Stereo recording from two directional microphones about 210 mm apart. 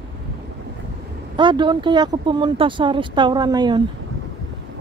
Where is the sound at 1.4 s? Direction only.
20° right (ahead or behind).